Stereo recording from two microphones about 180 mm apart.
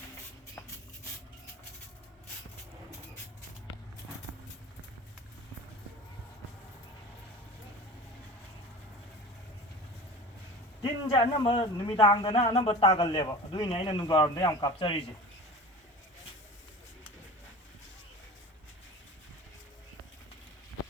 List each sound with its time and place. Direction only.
10.8 s a man's voice: 20° left (ahead or behind)